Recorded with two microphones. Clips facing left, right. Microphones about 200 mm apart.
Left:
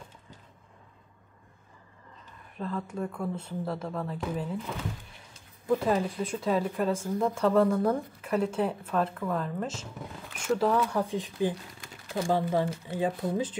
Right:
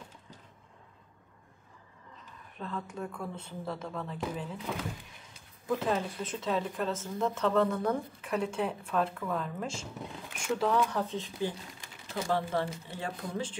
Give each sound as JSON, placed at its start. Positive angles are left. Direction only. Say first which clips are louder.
{"t": 2.5, "sound": "speech", "louder": "left 5 dB", "side_deg": 5}
{"t": 5.7, "sound": "speech", "louder": "left 4 dB", "side_deg": 5}